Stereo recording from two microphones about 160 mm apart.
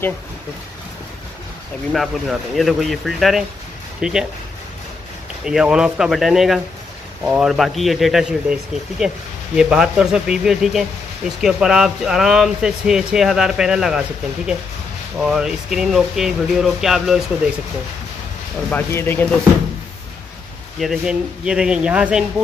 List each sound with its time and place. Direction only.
1.9 s speech: centre (ahead or behind)
5.4 s speech: 5° right (ahead or behind)
9.6 s speech: 5° right (ahead or behind)
18.7 s speech: 15° left (ahead or behind)
20.8 s speech: 5° right (ahead or behind)